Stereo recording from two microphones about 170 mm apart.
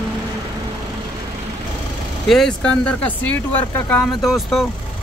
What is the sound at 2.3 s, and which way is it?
Speech, 5° left (ahead or behind).